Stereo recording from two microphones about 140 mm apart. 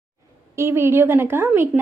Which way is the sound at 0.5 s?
20° right (ahead or behind).